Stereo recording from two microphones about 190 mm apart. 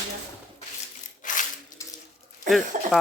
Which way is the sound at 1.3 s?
40° left (ahead or behind).